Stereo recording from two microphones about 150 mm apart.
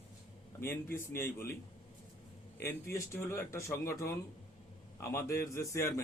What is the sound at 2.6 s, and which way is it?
A man's voice, 20° left (ahead or behind).